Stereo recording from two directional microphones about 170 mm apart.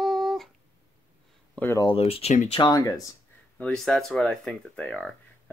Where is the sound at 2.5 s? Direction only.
25° left (ahead or behind).